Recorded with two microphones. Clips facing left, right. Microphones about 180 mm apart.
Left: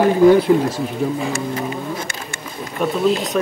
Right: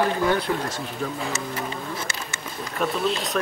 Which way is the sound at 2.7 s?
Centre (ahead or behind).